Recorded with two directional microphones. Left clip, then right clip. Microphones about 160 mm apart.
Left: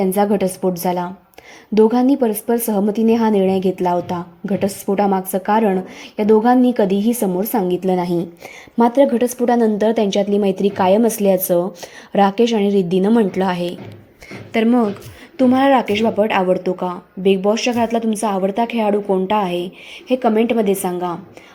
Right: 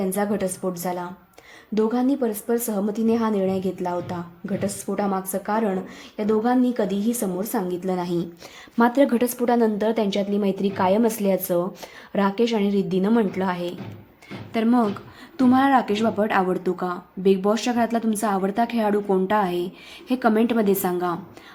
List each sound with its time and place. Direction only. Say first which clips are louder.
0.0 s a woman's voice: left 8 dB; 25° left (ahead or behind)
8.9 s a woman's voice: left 7 dB; 5° left (ahead or behind)